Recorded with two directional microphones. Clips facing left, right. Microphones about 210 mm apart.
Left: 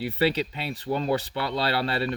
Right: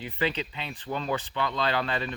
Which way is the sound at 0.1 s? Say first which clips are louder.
Left 4 dB; 40° left (ahead or behind).